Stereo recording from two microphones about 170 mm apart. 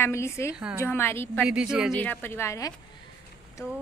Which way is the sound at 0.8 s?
15° left (ahead or behind).